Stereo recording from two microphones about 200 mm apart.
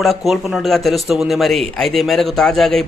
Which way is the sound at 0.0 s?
Centre (ahead or behind).